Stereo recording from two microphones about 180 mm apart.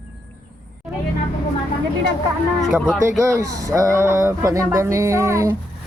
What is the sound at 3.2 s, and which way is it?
Speech, 20° right (ahead or behind).